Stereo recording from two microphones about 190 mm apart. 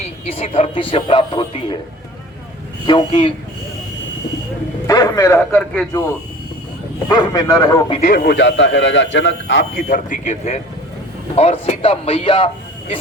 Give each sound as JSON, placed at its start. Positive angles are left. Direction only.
{"t": 0.0, "sound": "speech", "side_deg": 30}
{"t": 2.8, "sound": "speech", "side_deg": 25}
{"t": 4.9, "sound": "a man's voice", "side_deg": 20}
{"t": 7.1, "sound": "speech", "side_deg": 20}
{"t": 8.1, "sound": "a man's voice", "side_deg": 60}
{"t": 9.7, "sound": "speech", "side_deg": 45}